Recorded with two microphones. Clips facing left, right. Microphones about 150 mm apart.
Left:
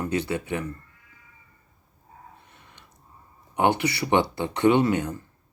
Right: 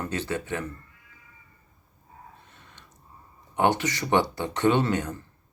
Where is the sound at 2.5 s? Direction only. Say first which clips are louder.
Even; 15° left (ahead or behind).